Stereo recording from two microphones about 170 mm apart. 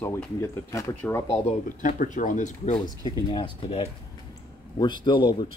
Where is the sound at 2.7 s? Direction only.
25° left (ahead or behind).